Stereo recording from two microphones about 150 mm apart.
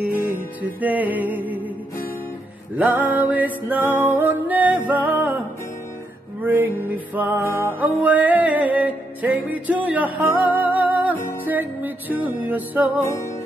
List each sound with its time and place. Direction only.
0.6 s music: 10° right (ahead or behind)
2.8 s music: 10° right (ahead or behind)
6.4 s music: 10° right (ahead or behind)
13.0 s music: 20° left (ahead or behind)